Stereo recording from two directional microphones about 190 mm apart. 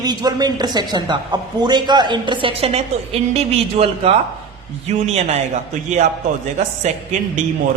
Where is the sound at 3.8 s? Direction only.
30° right (ahead or behind).